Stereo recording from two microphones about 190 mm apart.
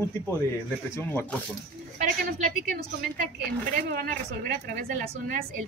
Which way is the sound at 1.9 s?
45° right (ahead or behind).